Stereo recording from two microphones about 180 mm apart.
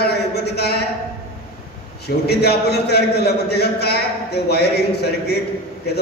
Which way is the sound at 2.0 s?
65° left (ahead or behind).